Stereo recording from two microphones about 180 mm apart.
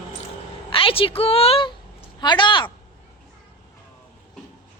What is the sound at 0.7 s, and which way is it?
A woman's voice, 30° left (ahead or behind).